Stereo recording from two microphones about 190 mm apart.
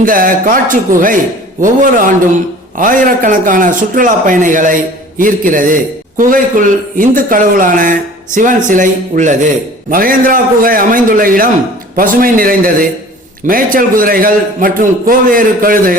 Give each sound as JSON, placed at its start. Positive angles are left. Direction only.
{"t": 0.0, "sound": "a man's voice", "side_deg": -45}